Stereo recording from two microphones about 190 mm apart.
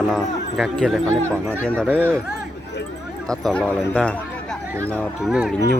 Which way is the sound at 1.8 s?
10° right (ahead or behind).